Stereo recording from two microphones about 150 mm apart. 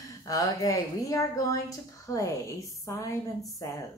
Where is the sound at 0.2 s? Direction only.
25° left (ahead or behind).